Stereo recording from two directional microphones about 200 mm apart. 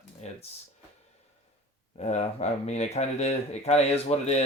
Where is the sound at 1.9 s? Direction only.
35° left (ahead or behind).